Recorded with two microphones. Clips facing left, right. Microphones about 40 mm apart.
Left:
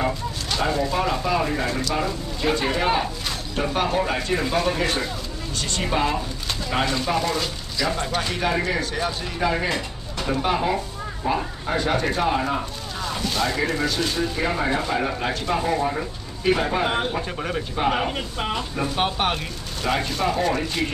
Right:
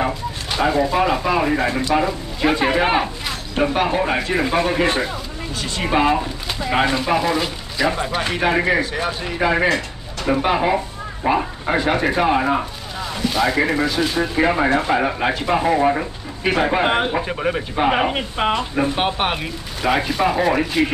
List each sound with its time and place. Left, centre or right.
0.0 s speech: centre
2.6 s speech: right
11.7 s speech: right
13.0 s speech: centre
14.3 s speech: right
17.9 s speech: right
18.9 s speech: centre